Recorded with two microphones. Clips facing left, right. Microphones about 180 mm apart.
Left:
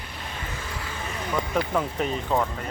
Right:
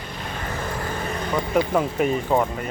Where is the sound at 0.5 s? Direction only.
55° right (ahead or behind).